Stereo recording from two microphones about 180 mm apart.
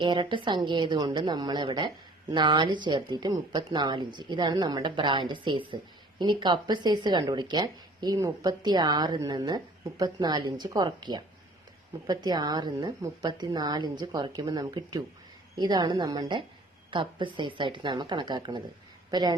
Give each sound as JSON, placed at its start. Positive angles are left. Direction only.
{"t": 0.0, "sound": "a woman's voice", "side_deg": -25}